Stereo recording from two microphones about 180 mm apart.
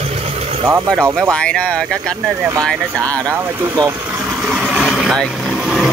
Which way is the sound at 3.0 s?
15° right (ahead or behind).